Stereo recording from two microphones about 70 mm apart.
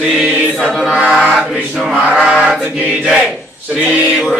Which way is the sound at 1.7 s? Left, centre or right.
Centre.